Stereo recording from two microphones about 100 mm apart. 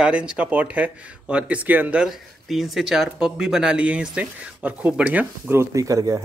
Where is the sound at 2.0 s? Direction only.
Centre (ahead or behind).